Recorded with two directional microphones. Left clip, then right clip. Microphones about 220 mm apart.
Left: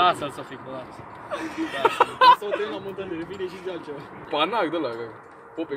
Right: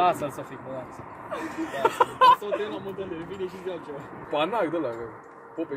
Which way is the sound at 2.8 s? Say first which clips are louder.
Left 2 dB; 35° left (ahead or behind).